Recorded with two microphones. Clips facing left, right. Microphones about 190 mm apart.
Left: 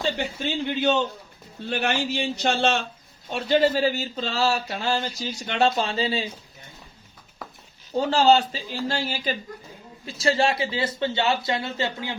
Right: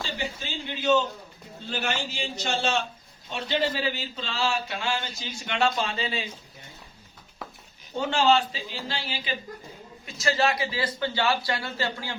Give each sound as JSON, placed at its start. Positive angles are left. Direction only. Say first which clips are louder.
{"t": 0.0, "sound": "a man's voice", "louder": "left 7 dB", "side_deg": 60}
{"t": 3.2, "sound": "speech", "louder": "left 7 dB", "side_deg": 50}
{"t": 7.9, "sound": "speech", "louder": "left 4 dB", "side_deg": 35}
{"t": 10.1, "sound": "a man's voice", "louder": "left 3 dB", "side_deg": 30}